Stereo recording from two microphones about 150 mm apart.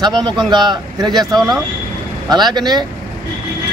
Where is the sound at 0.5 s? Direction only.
30° right (ahead or behind).